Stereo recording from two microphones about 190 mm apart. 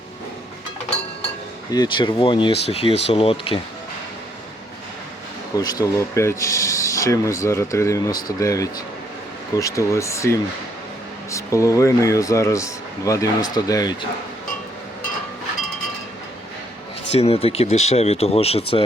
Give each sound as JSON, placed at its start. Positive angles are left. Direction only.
{"t": 1.7, "sound": "speech", "side_deg": 25}
{"t": 5.5, "sound": "speech", "side_deg": 20}
{"t": 17.1, "sound": "speech", "side_deg": 35}